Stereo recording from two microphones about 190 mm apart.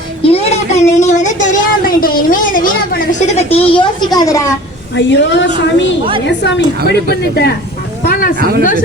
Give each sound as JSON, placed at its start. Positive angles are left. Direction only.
{"t": 0.2, "sound": "a sound", "side_deg": 30}
{"t": 3.1, "sound": "a woman's voice", "side_deg": 35}
{"t": 4.9, "sound": "a woman's voice", "side_deg": 70}
{"t": 8.0, "sound": "speech", "side_deg": 50}